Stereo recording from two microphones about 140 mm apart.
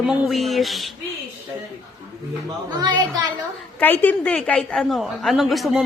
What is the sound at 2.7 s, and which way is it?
Speech, 25° right (ahead or behind).